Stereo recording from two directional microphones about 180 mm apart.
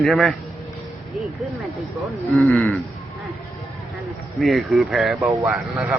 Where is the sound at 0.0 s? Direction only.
Centre (ahead or behind).